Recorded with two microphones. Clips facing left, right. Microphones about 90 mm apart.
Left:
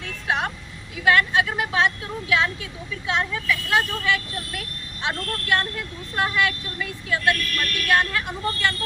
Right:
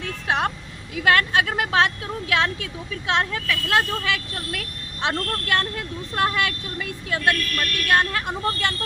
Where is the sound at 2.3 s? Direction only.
65° right (ahead or behind).